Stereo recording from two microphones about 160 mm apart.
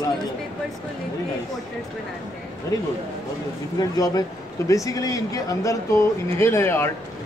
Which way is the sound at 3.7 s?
25° left (ahead or behind).